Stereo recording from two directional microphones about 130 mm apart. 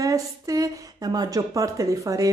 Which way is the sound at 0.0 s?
25° right (ahead or behind).